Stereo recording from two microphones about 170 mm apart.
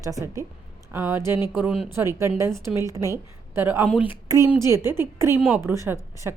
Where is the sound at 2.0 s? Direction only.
15° right (ahead or behind).